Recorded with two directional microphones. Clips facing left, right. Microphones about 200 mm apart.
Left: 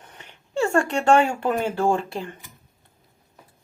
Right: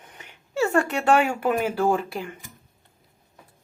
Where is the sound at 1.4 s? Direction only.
5° right (ahead or behind).